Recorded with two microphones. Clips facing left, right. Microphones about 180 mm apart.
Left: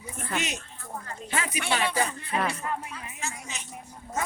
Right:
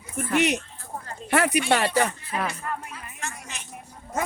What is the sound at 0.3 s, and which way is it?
Speech, 60° right (ahead or behind).